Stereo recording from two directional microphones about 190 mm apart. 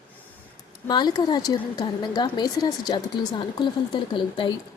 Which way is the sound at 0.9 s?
20° left (ahead or behind).